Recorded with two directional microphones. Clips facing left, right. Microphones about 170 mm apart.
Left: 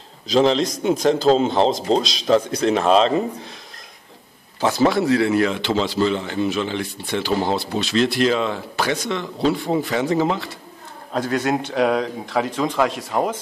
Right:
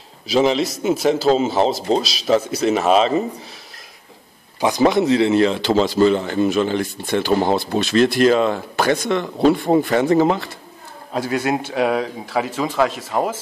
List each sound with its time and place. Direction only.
0.3 s a man's voice: 5° right (ahead or behind)
4.6 s a man's voice: 15° right (ahead or behind); by 10.5 s 50° right (ahead or behind)
11.1 s a man's voice: 10° right (ahead or behind)